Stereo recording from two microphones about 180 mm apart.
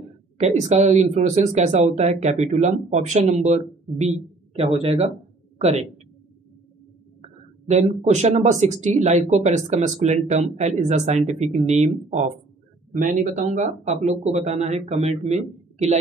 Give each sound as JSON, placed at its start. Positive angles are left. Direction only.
{"t": 0.4, "sound": "speech", "side_deg": -40}
{"t": 7.2, "sound": "speech", "side_deg": -35}